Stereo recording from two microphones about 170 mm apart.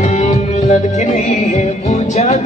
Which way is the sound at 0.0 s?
45° left (ahead or behind).